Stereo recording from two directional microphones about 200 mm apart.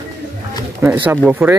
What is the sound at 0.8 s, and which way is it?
Speech, 15° right (ahead or behind).